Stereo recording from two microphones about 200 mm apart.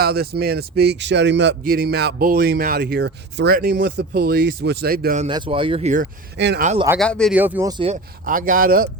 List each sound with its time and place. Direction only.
0.0 s speech: 50° right (ahead or behind)
5.3 s speech: 25° right (ahead or behind)
6.3 s speech: 60° right (ahead or behind)
6.6 s speech: 35° right (ahead or behind)
7.0 s speech: 5° left (ahead or behind)
7.3 s speech: 10° right (ahead or behind)
7.7 s speech: 25° right (ahead or behind)
8.2 s speech: 45° right (ahead or behind)